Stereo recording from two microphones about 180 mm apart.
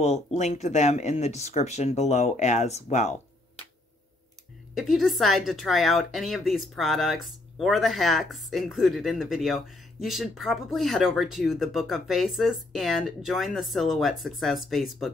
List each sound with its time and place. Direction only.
0.0 s speech: 40° left (ahead or behind)
4.7 s speech: centre (ahead or behind)